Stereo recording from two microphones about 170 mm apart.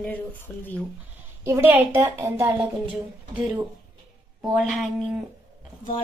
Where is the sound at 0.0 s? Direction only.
10° left (ahead or behind).